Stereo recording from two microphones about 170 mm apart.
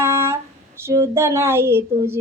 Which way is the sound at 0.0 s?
15° right (ahead or behind).